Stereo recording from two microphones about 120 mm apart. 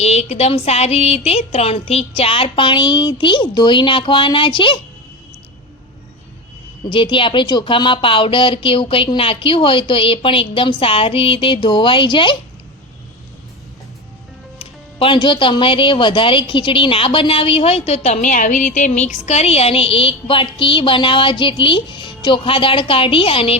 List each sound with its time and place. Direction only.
0.0 s speech: 65° left (ahead or behind); by 4.8 s 45° left (ahead or behind)
6.8 s speech: 45° left (ahead or behind)
14.6 s speech: 50° left (ahead or behind)